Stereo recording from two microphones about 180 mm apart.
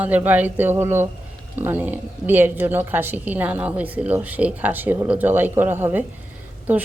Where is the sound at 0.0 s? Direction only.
10° right (ahead or behind).